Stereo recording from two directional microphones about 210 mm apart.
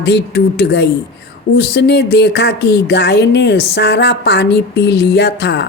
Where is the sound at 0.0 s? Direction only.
50° left (ahead or behind).